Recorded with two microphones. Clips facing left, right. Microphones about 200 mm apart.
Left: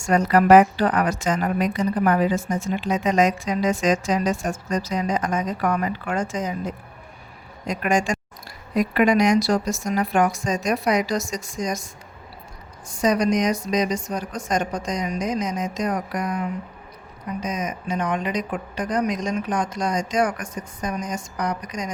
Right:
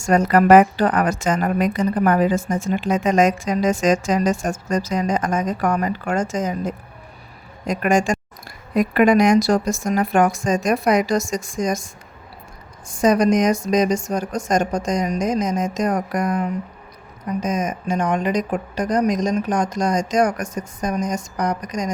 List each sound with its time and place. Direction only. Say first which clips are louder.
0.0 s a woman's voice: right 3 dB; 45° right (ahead or behind)
12.9 s a woman's voice: right 4 dB; 50° right (ahead or behind)